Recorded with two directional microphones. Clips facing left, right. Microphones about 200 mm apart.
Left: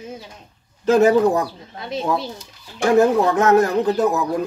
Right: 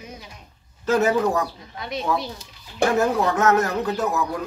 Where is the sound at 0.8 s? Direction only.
30° left (ahead or behind).